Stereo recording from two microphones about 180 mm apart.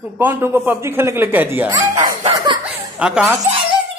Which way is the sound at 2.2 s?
25° right (ahead or behind).